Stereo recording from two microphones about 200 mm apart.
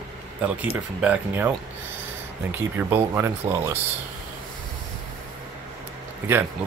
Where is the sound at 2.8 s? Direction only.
5° right (ahead or behind).